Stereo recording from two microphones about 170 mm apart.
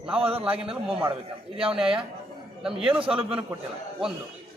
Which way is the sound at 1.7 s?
5° right (ahead or behind).